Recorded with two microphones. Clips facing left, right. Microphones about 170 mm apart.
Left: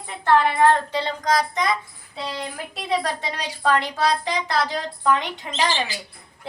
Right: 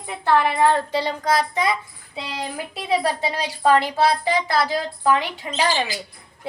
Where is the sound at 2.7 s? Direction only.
5° right (ahead or behind).